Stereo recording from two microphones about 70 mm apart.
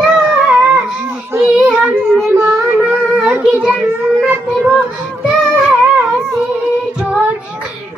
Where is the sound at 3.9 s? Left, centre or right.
Right.